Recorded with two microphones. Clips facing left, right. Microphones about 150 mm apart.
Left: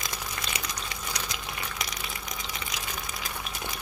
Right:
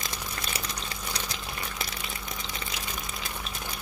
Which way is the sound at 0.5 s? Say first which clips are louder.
Even; 35° right (ahead or behind).